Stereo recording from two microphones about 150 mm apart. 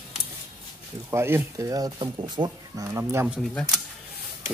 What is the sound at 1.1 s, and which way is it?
Speech, 15° right (ahead or behind).